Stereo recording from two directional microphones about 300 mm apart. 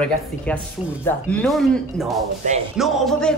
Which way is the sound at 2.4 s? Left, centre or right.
Right.